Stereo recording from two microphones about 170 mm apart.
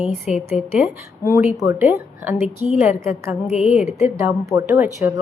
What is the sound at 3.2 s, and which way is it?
Speech, 15° right (ahead or behind).